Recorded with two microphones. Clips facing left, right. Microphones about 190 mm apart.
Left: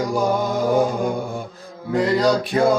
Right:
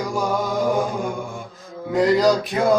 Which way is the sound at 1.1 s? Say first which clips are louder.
Left 4 dB; 35° left (ahead or behind).